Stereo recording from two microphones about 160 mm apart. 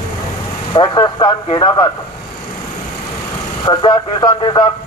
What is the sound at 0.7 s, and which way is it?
Speech, 25° left (ahead or behind).